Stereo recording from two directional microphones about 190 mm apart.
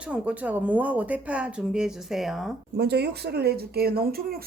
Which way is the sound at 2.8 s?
60° right (ahead or behind).